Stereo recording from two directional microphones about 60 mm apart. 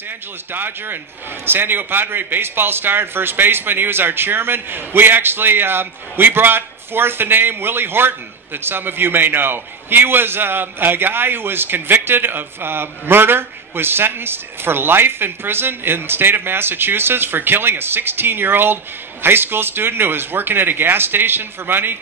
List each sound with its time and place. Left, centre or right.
0.5 s a man's voice: right